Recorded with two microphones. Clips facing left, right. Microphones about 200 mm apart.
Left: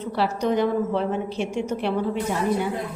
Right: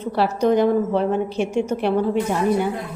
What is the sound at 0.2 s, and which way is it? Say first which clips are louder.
A woman's voice: right 5 dB; 50° right (ahead or behind).